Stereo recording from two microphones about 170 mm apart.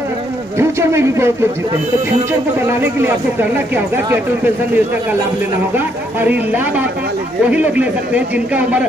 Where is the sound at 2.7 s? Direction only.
15° right (ahead or behind).